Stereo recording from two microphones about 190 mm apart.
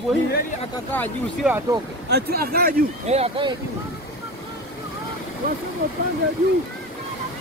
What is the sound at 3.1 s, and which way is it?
Speech, 30° right (ahead or behind).